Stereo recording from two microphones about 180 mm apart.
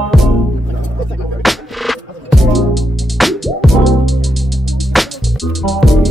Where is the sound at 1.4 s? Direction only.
Centre (ahead or behind).